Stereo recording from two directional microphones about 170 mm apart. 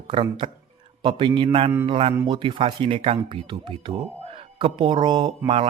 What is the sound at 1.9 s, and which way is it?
Speech, 35° right (ahead or behind).